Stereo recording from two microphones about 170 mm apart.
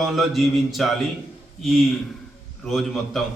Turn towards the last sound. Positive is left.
turn(degrees=0)  # may be behind; listen again after turning